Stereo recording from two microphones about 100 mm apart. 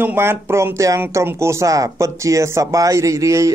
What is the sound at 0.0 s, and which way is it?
Speech, 20° right (ahead or behind).